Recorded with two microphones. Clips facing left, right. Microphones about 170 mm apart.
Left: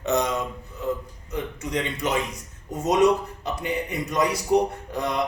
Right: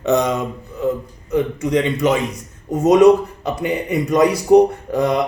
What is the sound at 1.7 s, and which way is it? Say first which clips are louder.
Speech: right 10 dB; 90° right.